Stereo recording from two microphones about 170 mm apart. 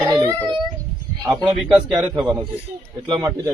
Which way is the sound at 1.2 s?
25° right (ahead or behind).